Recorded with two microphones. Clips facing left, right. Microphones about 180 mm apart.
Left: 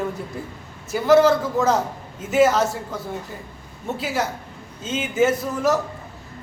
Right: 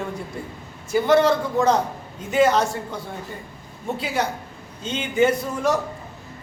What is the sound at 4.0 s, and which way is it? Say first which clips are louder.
A man's voice: even; 5° left (ahead or behind).